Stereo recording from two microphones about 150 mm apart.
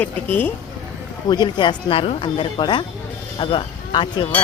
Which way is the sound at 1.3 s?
30° left (ahead or behind).